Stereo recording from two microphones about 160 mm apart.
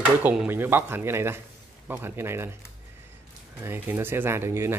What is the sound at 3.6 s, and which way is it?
Speech, 15° right (ahead or behind).